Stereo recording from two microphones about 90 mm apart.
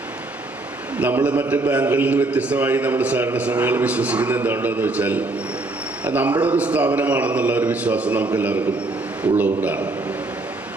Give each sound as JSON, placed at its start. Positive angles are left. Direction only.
{"t": 0.9, "sound": "a man's voice", "side_deg": -15}